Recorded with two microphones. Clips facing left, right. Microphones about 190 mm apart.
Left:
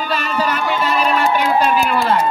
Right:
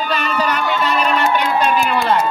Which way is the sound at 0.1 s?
5° left (ahead or behind).